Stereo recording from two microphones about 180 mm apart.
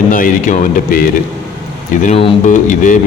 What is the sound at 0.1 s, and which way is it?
Speech, 50° left (ahead or behind).